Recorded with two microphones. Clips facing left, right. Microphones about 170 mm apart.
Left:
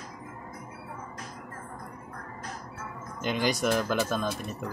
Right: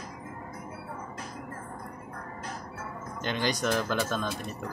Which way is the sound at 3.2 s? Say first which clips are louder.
Left 2 dB; 5° left (ahead or behind).